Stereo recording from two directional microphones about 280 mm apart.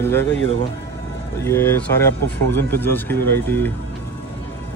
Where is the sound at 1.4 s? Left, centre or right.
Centre.